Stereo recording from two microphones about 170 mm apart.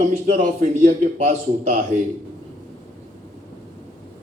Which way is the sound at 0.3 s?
50° right (ahead or behind).